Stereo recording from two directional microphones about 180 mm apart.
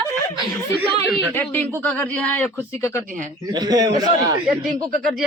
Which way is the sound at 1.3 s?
10° left (ahead or behind).